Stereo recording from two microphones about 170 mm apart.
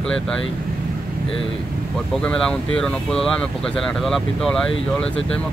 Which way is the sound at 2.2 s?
5° left (ahead or behind).